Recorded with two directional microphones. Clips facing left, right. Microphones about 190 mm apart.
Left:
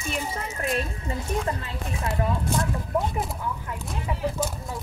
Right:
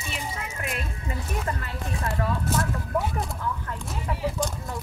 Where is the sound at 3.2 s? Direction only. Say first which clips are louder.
Even; 5° left (ahead or behind).